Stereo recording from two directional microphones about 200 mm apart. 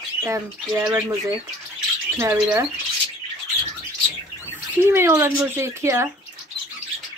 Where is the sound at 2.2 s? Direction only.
10° right (ahead or behind).